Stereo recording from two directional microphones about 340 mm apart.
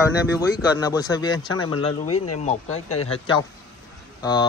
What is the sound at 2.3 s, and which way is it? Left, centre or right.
Speech, centre.